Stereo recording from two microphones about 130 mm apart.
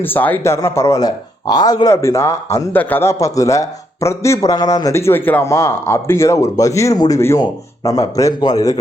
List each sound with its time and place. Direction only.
0.0 s speech: 15° left (ahead or behind); by 8.8 s 30° left (ahead or behind)